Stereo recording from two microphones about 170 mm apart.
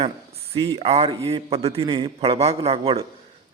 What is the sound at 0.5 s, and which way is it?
A man's voice, 35° right (ahead or behind).